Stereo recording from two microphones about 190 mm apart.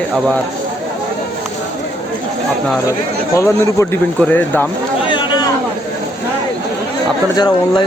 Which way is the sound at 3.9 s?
10° left (ahead or behind).